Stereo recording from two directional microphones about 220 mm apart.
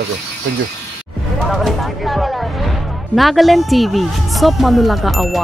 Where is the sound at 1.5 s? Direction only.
Centre (ahead or behind).